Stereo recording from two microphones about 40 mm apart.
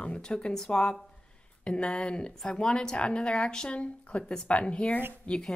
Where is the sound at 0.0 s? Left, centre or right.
Left.